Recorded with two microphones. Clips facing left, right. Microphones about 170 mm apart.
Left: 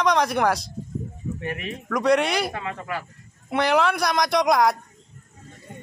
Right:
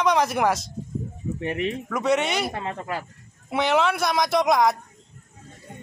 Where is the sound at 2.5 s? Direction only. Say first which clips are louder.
Right 1 dB; 35° right (ahead or behind).